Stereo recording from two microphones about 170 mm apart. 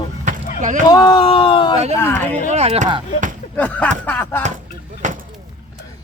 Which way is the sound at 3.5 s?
10° left (ahead or behind).